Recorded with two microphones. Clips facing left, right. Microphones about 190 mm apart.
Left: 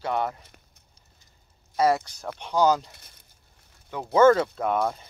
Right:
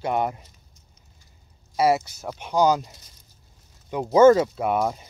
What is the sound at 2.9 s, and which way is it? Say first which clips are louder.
Speech: right 2 dB; 60° left (ahead or behind).